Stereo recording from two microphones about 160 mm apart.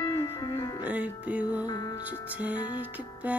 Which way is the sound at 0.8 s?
10° right (ahead or behind).